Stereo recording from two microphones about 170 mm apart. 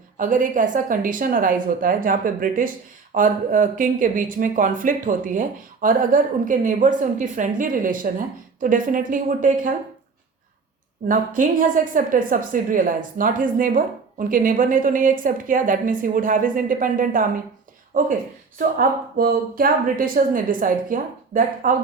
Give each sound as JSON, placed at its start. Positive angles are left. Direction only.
{"t": 0.2, "sound": "a woman's voice", "side_deg": -50}
{"t": 11.1, "sound": "a woman's voice", "side_deg": -55}